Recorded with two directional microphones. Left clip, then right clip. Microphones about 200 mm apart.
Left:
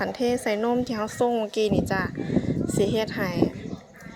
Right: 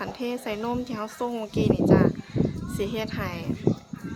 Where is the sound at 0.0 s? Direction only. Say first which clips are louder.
Left 6 dB; 25° left (ahead or behind).